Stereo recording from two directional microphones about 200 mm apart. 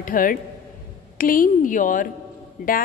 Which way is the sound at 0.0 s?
45° left (ahead or behind).